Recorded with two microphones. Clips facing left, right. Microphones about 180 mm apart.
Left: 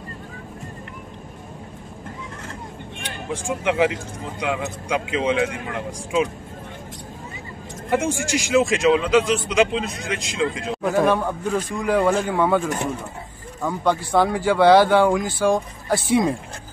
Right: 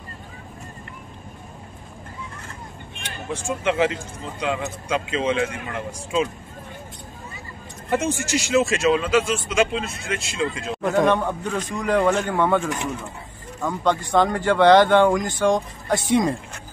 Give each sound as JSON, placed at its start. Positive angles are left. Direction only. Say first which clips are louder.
{"t": 3.4, "sound": "speech", "louder": "left 1 dB", "side_deg": 15}
{"t": 7.9, "sound": "speech", "louder": "left 1 dB", "side_deg": 10}
{"t": 10.8, "sound": "speech", "louder": "even", "side_deg": 0}